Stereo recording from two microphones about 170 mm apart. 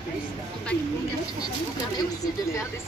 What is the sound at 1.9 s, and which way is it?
Speech, 20° left (ahead or behind).